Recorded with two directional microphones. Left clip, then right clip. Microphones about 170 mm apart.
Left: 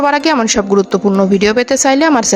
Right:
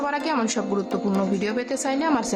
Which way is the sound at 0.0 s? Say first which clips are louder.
Left 12 dB; 50° left (ahead or behind).